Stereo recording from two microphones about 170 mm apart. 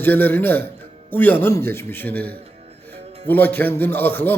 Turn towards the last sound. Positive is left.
turn(degrees=10)  # may be behind; listen again after turning